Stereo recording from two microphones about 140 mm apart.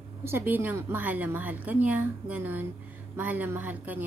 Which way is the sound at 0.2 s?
15° right (ahead or behind).